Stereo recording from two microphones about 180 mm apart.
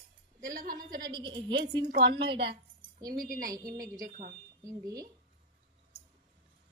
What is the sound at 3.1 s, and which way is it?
Speech, 50° right (ahead or behind).